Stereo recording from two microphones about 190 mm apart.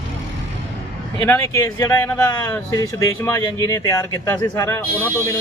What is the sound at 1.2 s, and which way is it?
Speech, 15° left (ahead or behind).